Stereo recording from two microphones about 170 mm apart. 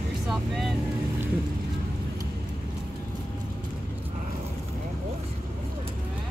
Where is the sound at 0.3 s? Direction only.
Centre (ahead or behind).